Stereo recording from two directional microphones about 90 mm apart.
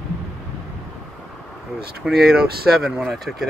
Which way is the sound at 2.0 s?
5° right (ahead or behind).